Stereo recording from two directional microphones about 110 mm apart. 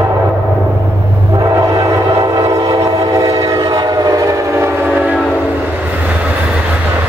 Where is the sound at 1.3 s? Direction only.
30° right (ahead or behind).